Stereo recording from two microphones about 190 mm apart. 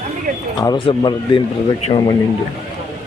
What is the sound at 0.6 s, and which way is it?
A man's voice, 25° left (ahead or behind).